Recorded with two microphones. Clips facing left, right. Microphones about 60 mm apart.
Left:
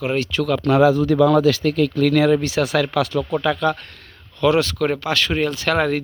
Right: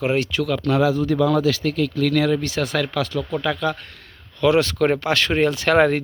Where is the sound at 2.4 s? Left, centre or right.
Centre.